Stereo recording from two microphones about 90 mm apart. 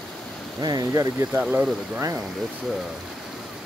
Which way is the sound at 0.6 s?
50° right (ahead or behind).